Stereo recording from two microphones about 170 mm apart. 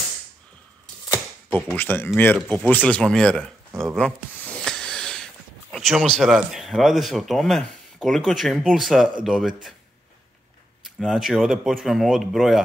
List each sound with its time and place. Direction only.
1.0 s typewriter: 20° left (ahead or behind)
1.7 s speech: 10° left (ahead or behind)
10.8 s speech: centre (ahead or behind)